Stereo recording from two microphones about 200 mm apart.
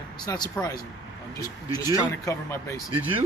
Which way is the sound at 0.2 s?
20° left (ahead or behind).